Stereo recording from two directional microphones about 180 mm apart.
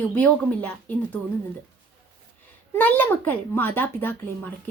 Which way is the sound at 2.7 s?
10° left (ahead or behind).